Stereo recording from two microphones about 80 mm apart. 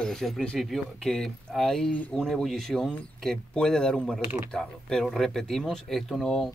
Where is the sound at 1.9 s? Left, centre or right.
Centre.